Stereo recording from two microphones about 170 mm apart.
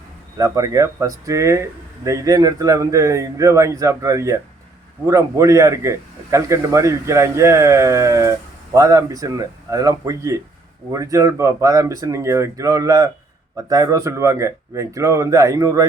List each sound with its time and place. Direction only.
0.3 s a man's voice: 20° right (ahead or behind)